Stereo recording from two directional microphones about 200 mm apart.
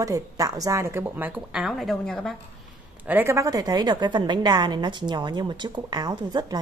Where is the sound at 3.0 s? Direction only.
10° right (ahead or behind).